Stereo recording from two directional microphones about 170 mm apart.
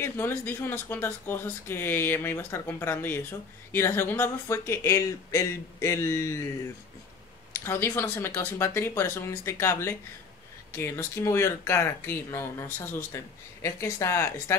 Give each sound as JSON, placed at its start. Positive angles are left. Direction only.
{"t": 0.0, "sound": "speech", "side_deg": 15}
{"t": 7.5, "sound": "speech", "side_deg": 15}